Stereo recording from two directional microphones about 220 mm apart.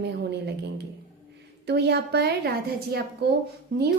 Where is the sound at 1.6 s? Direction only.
50° right (ahead or behind).